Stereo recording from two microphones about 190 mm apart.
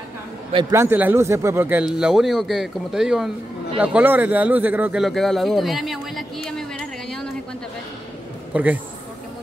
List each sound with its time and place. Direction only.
0.5 s a man's voice: 25° right (ahead or behind)
0.7 s a man's voice: 10° right (ahead or behind)
8.5 s speech: 10° right (ahead or behind)